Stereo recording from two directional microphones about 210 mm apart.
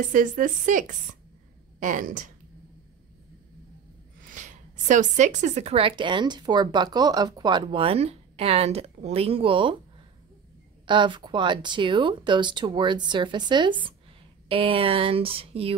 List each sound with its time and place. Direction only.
0.1 s speech: 40° right (ahead or behind)
4.2 s a woman's voice: 40° right (ahead or behind)
10.9 s a woman's voice: 20° right (ahead or behind)